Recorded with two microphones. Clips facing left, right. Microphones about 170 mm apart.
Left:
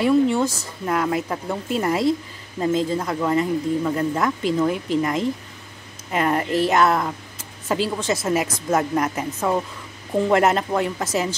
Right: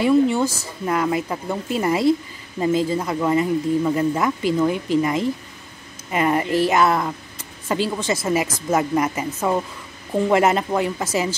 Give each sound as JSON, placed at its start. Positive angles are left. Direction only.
{"t": 0.0, "sound": "speech", "side_deg": 0}